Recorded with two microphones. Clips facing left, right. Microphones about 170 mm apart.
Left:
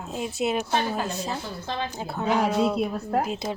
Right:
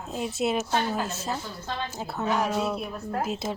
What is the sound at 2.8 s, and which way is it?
Speech, 70° left (ahead or behind).